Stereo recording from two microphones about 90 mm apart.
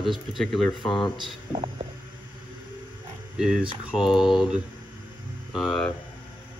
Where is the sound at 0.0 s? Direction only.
Centre (ahead or behind).